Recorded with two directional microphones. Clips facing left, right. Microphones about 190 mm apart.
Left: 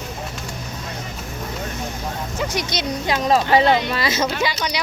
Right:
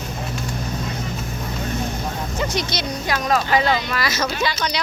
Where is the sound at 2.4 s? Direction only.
10° left (ahead or behind).